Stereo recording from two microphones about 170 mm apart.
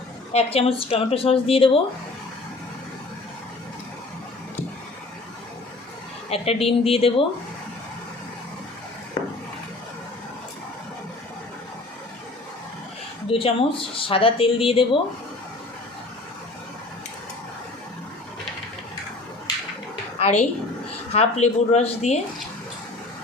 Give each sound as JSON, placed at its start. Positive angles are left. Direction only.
{"t": 0.3, "sound": "speech", "side_deg": 35}
{"t": 6.3, "sound": "speech", "side_deg": 35}
{"t": 13.2, "sound": "speech", "side_deg": 30}
{"t": 20.1, "sound": "speech", "side_deg": 40}